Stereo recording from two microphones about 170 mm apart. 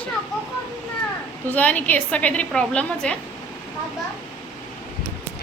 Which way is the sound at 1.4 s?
10° left (ahead or behind).